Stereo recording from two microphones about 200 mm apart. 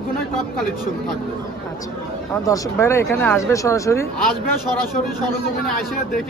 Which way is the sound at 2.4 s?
15° left (ahead or behind).